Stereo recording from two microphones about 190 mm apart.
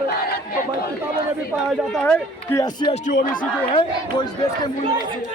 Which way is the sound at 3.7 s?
20° left (ahead or behind).